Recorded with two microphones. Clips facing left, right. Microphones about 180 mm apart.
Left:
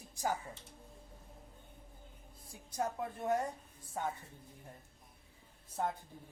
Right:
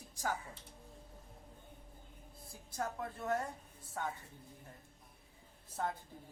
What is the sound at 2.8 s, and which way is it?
Speech, 15° left (ahead or behind).